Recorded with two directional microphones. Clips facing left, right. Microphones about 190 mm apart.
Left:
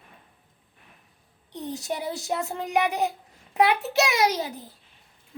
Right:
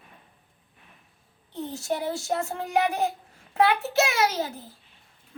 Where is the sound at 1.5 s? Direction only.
15° left (ahead or behind).